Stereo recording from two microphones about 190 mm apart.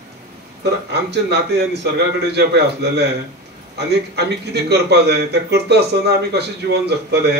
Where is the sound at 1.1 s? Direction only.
60° right (ahead or behind).